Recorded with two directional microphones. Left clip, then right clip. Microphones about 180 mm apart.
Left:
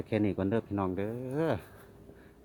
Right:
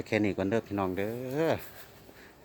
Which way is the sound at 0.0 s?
Centre (ahead or behind).